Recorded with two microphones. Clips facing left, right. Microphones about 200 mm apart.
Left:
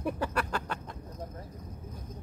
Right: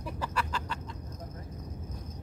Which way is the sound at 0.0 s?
55° left (ahead or behind).